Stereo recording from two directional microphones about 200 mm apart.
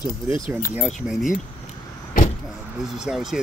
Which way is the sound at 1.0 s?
Centre (ahead or behind).